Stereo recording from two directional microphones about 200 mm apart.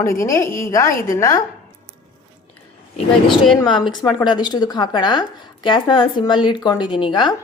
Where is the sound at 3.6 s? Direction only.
20° left (ahead or behind).